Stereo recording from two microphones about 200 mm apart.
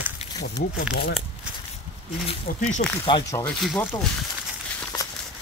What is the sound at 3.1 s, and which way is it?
Speech, 20° left (ahead or behind).